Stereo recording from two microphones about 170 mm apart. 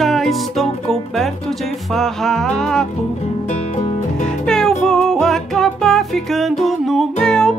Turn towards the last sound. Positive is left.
turn(degrees=5)  # may be behind; listen again after turning